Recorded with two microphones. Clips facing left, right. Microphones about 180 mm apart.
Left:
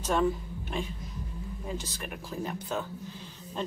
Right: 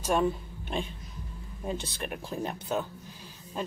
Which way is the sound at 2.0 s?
20° right (ahead or behind).